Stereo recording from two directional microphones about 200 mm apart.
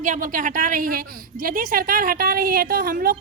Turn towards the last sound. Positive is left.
turn(degrees=-45)  # may be behind; listen again after turning